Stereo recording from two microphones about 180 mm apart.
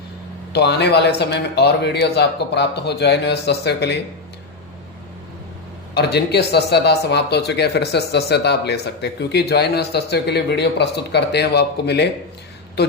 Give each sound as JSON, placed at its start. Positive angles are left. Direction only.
{"t": 0.5, "sound": "speech", "side_deg": 65}
{"t": 5.9, "sound": "speech", "side_deg": 65}